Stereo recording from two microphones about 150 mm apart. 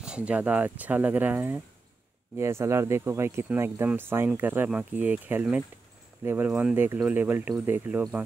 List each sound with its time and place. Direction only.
0.0 s speech: 5° right (ahead or behind)